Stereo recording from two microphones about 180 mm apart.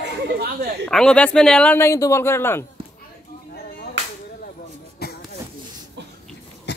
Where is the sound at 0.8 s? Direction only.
5° left (ahead or behind).